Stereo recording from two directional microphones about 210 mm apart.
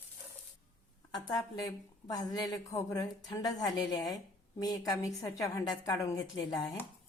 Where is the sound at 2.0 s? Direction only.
15° left (ahead or behind).